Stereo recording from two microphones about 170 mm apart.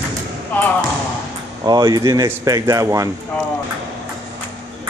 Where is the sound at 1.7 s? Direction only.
25° right (ahead or behind).